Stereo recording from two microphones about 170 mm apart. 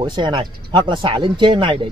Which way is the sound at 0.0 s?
25° right (ahead or behind).